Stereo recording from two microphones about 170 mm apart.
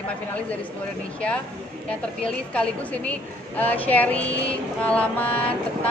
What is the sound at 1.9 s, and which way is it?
A woman's voice, 5° left (ahead or behind).